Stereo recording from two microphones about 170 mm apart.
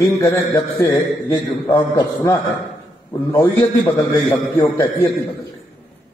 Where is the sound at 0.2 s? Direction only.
20° left (ahead or behind).